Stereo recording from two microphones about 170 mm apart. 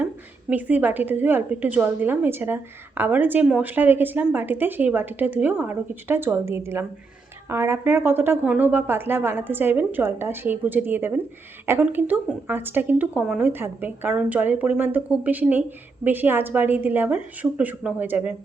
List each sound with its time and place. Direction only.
0.5 s a woman's voice: 10° right (ahead or behind)